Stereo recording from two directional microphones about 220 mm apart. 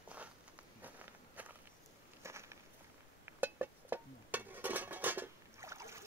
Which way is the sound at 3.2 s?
10° right (ahead or behind).